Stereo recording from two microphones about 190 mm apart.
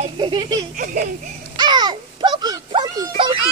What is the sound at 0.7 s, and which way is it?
Speech, 45° right (ahead or behind).